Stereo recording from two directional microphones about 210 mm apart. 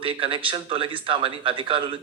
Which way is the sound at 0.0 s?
25° right (ahead or behind).